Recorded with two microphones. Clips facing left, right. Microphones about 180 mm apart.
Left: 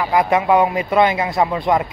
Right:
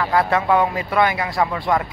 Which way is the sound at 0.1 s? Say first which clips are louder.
Left 3 dB; 15° left (ahead or behind).